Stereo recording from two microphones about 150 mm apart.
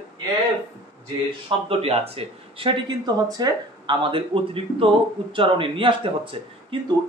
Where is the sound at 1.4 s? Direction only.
40° right (ahead or behind).